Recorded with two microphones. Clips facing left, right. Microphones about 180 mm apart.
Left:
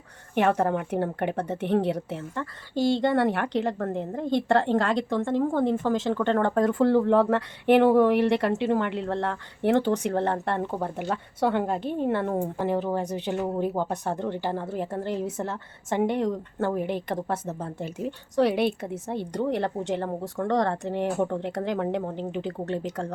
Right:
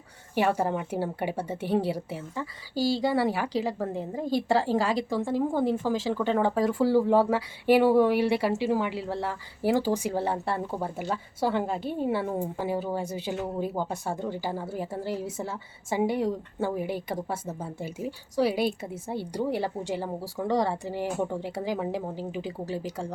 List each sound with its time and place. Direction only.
0.3 s a woman's voice: 5° right (ahead or behind)
11.1 s speech: 60° left (ahead or behind)
11.8 s a woman's voice: 5° right (ahead or behind)
13.2 s speech: 60° left (ahead or behind)
14.1 s a woman's voice: 5° right (ahead or behind)